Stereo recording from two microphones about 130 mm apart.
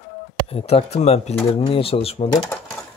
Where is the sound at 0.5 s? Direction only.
50° left (ahead or behind).